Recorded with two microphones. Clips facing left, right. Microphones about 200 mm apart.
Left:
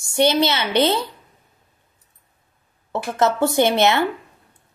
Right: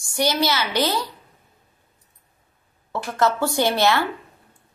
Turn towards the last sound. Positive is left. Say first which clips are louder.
# left 3 dB
turn(degrees=20)  # may be behind; listen again after turning